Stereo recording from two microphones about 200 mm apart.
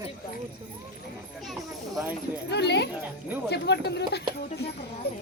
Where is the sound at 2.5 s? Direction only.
55° left (ahead or behind).